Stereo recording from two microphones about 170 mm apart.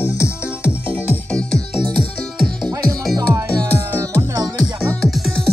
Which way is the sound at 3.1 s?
20° right (ahead or behind).